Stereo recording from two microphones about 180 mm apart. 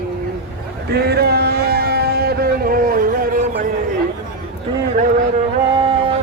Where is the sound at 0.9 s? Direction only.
60° right (ahead or behind).